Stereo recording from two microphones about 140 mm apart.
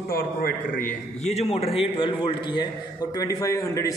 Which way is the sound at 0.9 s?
50° left (ahead or behind).